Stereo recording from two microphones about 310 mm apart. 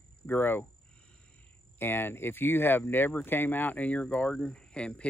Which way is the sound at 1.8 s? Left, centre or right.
Centre.